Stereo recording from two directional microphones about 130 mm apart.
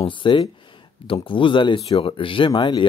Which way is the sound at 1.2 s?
40° left (ahead or behind).